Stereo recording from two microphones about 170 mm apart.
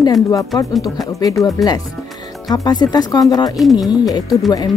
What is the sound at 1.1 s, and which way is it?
A woman's voice, 20° left (ahead or behind).